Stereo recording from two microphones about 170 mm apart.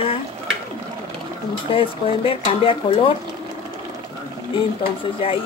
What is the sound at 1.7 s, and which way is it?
Speech, 30° left (ahead or behind).